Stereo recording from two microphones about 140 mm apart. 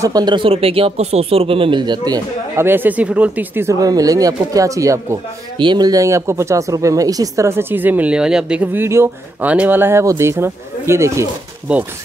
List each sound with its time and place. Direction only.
0.0 s speech: 30° right (ahead or behind)
2.6 s speech: 15° right (ahead or behind)
3.8 s speech: 25° right (ahead or behind)
5.6 s speech: 30° right (ahead or behind)